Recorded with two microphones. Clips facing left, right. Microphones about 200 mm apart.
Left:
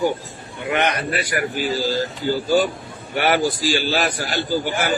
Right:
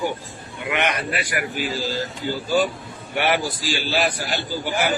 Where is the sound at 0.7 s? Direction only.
40° left (ahead or behind).